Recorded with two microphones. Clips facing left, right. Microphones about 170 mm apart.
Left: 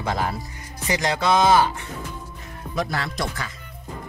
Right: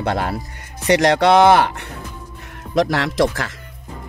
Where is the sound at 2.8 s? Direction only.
90° right.